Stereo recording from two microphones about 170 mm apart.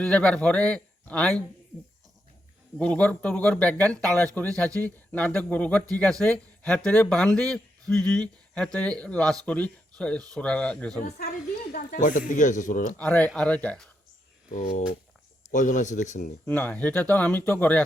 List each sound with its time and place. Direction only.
0.0 s speech: 5° left (ahead or behind)
2.7 s speech: 5° left (ahead or behind)
11.7 s speech: 55° left (ahead or behind)
13.0 s speech: 5° left (ahead or behind)
14.5 s speech: 45° left (ahead or behind)
16.5 s speech: 10° left (ahead or behind)